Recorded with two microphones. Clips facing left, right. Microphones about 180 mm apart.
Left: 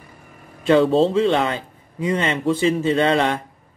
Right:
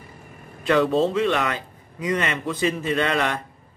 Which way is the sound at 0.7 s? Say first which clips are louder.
Left 4 dB; 25° left (ahead or behind).